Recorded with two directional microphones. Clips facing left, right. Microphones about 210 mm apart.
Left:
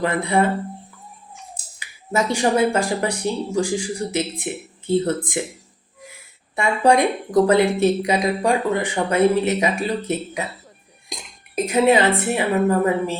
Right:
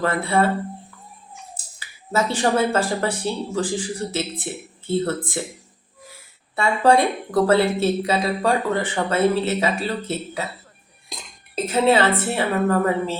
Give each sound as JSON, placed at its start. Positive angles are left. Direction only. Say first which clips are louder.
{"t": 0.0, "sound": "speech", "louder": "left 1 dB", "side_deg": 15}
{"t": 1.8, "sound": "speech", "louder": "left 1 dB", "side_deg": 15}
{"t": 6.6, "sound": "speech", "louder": "even", "side_deg": 15}